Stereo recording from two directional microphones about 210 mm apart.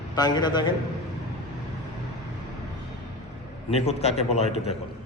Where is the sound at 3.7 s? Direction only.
30° left (ahead or behind).